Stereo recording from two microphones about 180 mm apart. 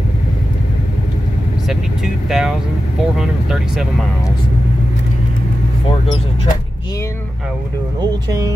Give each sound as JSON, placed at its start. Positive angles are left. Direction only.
{"t": 2.2, "sound": "speech", "side_deg": 0}
{"t": 8.0, "sound": "speech", "side_deg": -20}